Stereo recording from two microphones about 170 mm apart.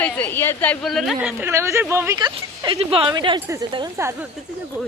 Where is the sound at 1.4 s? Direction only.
15° right (ahead or behind).